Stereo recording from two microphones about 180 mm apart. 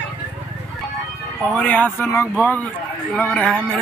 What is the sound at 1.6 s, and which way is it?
A man's voice, 10° left (ahead or behind).